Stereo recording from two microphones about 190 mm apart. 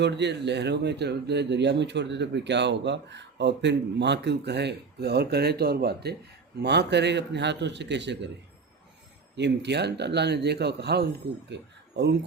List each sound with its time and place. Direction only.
0.0 s speech: 65° right (ahead or behind)
9.3 s speech: 65° right (ahead or behind)